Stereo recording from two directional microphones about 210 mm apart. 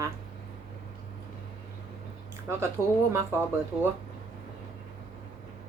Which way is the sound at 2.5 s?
10° right (ahead or behind).